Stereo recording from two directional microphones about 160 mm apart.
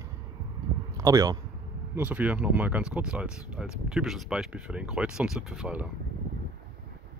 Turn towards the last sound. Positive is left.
turn(degrees=-5)  # may be behind; listen again after turning